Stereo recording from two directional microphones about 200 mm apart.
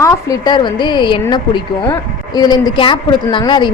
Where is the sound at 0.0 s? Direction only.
15° left (ahead or behind).